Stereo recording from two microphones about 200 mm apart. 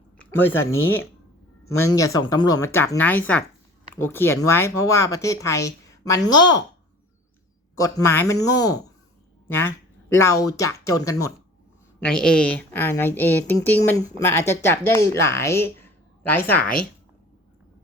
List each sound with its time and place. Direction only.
0.2 s a woman's voice: 10° left (ahead or behind)
7.8 s a woman's voice: 15° left (ahead or behind)
12.0 s a woman's voice: 5° left (ahead or behind)